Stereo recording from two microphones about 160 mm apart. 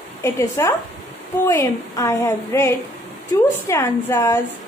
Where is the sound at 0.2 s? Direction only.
15° left (ahead or behind).